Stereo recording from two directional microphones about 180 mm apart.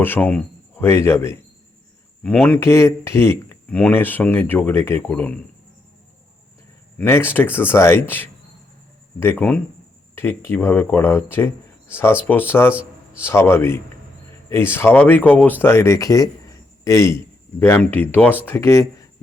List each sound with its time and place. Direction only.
0.0 s speech: 10° left (ahead or behind)
7.0 s speech: 10° left (ahead or behind)